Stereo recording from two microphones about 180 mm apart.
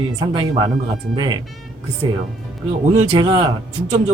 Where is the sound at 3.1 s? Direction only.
30° right (ahead or behind).